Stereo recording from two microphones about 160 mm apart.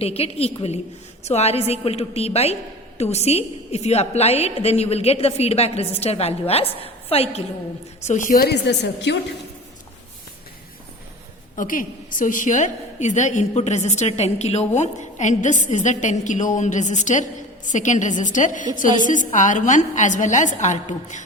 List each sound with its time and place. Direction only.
0.0 s a woman's voice: 40° left (ahead or behind)
8.0 s a woman's voice: 50° left (ahead or behind); by 9.1 s 90° left
11.5 s a woman's voice: 55° left (ahead or behind)